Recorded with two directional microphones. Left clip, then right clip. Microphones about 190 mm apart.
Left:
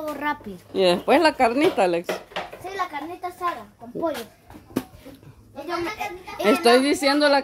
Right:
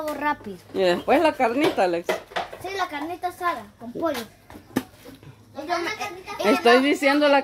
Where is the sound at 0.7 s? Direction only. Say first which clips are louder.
Left 2 dB; 15° left (ahead or behind).